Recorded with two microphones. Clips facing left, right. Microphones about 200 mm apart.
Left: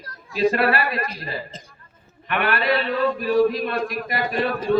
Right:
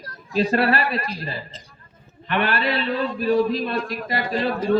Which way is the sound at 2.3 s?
30° right (ahead or behind).